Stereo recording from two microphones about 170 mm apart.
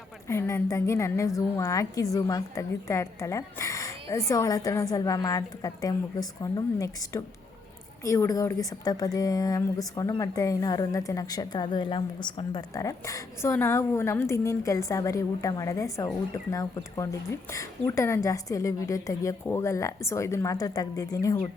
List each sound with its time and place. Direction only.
0.3 s a woman's voice: 15° left (ahead or behind)